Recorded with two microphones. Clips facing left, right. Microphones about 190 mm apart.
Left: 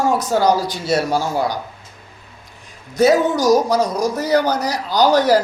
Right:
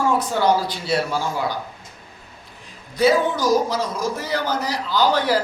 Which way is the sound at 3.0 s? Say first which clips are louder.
Left 4 dB; 40° left (ahead or behind).